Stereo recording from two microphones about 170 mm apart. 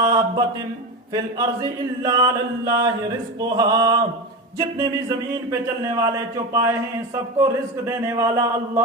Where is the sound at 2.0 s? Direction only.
20° right (ahead or behind).